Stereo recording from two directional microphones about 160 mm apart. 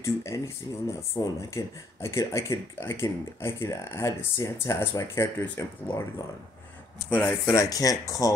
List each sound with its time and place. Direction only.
0.0 s speech: 20° left (ahead or behind)